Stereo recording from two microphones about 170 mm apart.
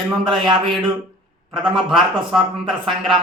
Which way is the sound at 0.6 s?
Centre (ahead or behind).